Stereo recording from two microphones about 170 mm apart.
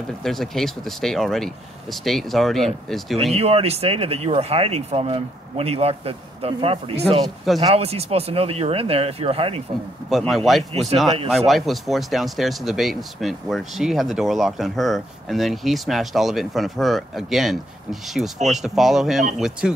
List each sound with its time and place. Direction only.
0.2 s speech: centre (ahead or behind)
3.3 s speech: 35° right (ahead or behind)
10.0 s speech: centre (ahead or behind)